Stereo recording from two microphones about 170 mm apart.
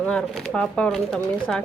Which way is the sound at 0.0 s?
5° left (ahead or behind).